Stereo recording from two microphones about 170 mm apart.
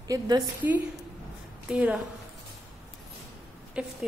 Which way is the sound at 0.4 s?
10° right (ahead or behind).